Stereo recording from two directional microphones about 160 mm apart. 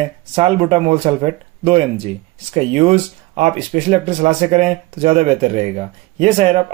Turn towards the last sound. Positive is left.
turn(degrees=-40)  # may be behind; listen again after turning